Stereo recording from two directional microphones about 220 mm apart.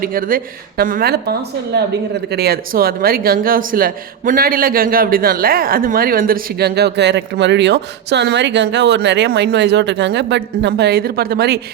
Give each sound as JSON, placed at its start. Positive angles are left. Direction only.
{"t": 0.0, "sound": "speech", "side_deg": -40}